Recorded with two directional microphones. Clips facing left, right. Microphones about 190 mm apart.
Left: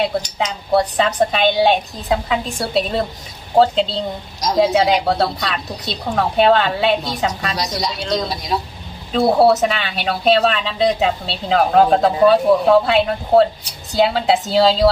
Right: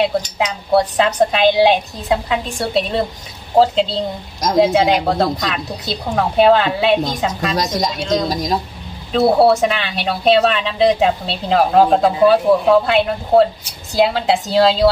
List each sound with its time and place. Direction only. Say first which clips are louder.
0.0 s a woman's voice: right 2 dB; centre (ahead or behind)
7.5 s speech: right 4 dB; 45° right (ahead or behind)
9.1 s a woman's voice: right 1 dB; centre (ahead or behind)